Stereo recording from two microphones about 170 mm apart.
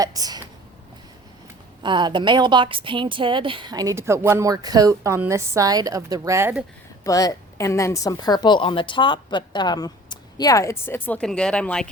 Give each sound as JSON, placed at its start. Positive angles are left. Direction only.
{"t": 0.0, "sound": "a woman's voice", "side_deg": -20}
{"t": 1.8, "sound": "a woman's voice", "side_deg": -25}
{"t": 7.0, "sound": "a woman's voice", "side_deg": 20}